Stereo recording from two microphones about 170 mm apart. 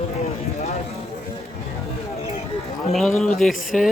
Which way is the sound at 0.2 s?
40° left (ahead or behind).